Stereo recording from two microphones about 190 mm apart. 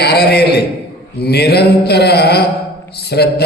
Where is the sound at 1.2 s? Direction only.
60° left (ahead or behind).